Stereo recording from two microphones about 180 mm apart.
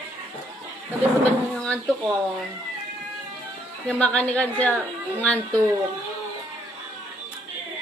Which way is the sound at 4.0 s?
5° left (ahead or behind).